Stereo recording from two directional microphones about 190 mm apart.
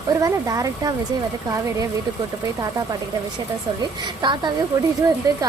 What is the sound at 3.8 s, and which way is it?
Speech, 25° right (ahead or behind).